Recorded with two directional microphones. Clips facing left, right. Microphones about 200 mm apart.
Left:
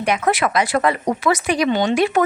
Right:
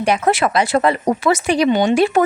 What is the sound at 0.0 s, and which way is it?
A woman's voice, 30° right (ahead or behind).